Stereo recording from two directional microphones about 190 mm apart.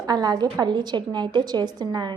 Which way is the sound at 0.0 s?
20° right (ahead or behind).